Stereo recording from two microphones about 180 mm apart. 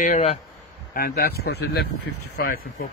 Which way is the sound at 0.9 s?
60° left (ahead or behind).